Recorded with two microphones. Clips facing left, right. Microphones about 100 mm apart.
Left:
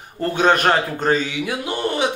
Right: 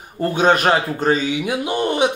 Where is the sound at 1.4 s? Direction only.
15° right (ahead or behind).